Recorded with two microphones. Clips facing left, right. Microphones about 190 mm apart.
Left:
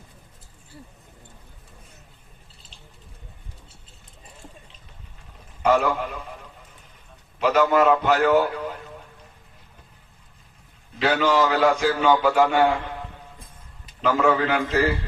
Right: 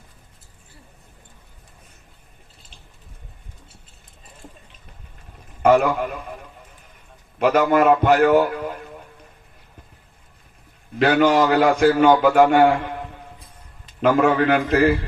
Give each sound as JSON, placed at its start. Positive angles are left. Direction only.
{"t": 5.6, "sound": "a man's voice", "side_deg": -55}
{"t": 7.3, "sound": "a man's voice", "side_deg": -55}
{"t": 10.9, "sound": "a man's voice", "side_deg": -55}
{"t": 14.0, "sound": "speech", "side_deg": -55}